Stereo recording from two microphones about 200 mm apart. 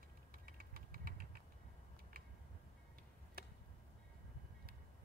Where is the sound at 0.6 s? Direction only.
45° right (ahead or behind).